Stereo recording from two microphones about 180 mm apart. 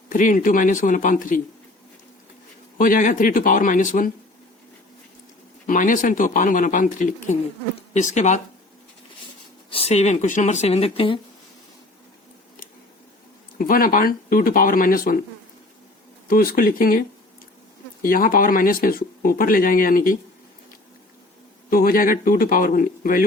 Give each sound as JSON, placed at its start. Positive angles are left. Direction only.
{"t": 0.1, "sound": "speech", "side_deg": 45}
{"t": 2.7, "sound": "speech", "side_deg": 50}
{"t": 5.6, "sound": "speech", "side_deg": 45}
{"t": 9.6, "sound": "speech", "side_deg": 35}
{"t": 13.6, "sound": "speech", "side_deg": 50}
{"t": 16.3, "sound": "speech", "side_deg": 55}
{"t": 18.0, "sound": "speech", "side_deg": 50}
{"t": 21.7, "sound": "speech", "side_deg": 50}